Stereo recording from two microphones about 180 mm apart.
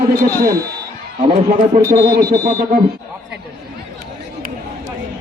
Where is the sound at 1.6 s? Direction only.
50° right (ahead or behind).